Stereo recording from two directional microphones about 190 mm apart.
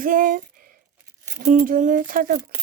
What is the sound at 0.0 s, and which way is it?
Speech, 45° right (ahead or behind).